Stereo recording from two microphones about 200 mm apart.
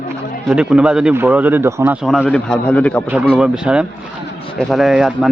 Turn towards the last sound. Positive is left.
turn(degrees=-5)  # may be behind; listen again after turning